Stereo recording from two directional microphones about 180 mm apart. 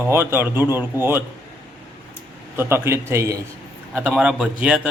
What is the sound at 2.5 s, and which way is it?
Speech, 15° right (ahead or behind).